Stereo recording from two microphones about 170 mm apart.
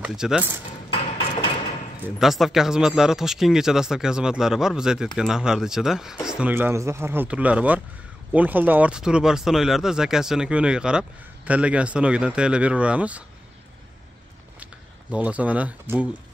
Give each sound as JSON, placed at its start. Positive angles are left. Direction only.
{"t": 0.0, "sound": "speech", "side_deg": -5}
{"t": 0.8, "sound": "a sound", "side_deg": 30}
{"t": 2.1, "sound": "speech", "side_deg": 0}
{"t": 14.6, "sound": "speech", "side_deg": -5}